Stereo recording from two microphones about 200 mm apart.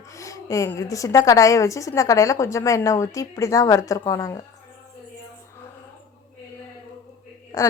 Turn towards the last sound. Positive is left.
turn(degrees=20)  # may be behind; listen again after turning